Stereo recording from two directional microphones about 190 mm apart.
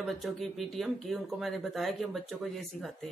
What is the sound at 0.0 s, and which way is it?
Speech, centre (ahead or behind).